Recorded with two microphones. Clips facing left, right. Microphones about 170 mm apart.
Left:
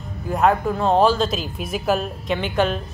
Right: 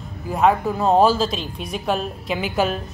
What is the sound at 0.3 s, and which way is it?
A woman's voice, 5° right (ahead or behind).